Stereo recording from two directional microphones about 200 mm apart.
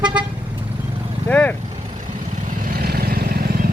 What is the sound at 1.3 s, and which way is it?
Vehicle, 5° left (ahead or behind).